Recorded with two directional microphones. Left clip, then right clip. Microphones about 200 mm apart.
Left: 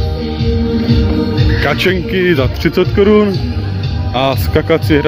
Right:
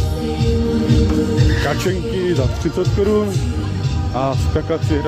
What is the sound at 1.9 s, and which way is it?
Speech, 20° left (ahead or behind).